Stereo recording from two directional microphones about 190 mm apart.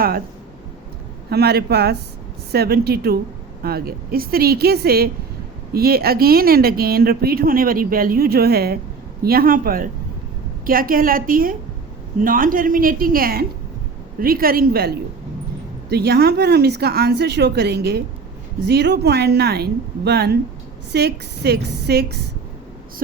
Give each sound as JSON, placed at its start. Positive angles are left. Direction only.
{"t": 1.3, "sound": "a woman's voice", "side_deg": -55}